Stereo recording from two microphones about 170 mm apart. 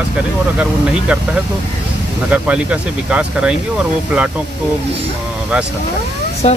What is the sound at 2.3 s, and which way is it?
Speech, 10° right (ahead or behind).